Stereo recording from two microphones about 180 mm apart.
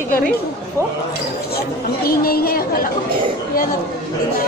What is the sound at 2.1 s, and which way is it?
Speech, 55° left (ahead or behind).